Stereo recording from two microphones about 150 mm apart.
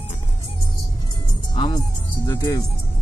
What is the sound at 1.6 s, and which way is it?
Speech, 30° left (ahead or behind).